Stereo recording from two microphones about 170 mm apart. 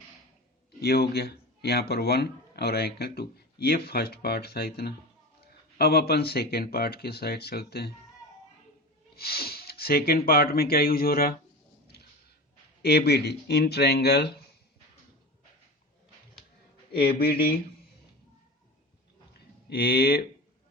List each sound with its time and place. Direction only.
0.8 s speech: 70° left (ahead or behind)
9.1 s speech: 65° left (ahead or behind)
12.8 s speech: 70° left (ahead or behind)
16.9 s speech: 65° left (ahead or behind)
19.7 s speech: 70° left (ahead or behind)